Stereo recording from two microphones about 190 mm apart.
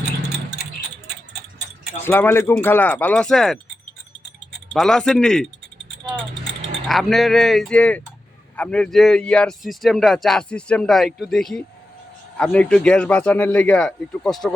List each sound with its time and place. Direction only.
2.0 s speech: 10° left (ahead or behind)
4.7 s speech: centre (ahead or behind)
6.8 s speech: centre (ahead or behind)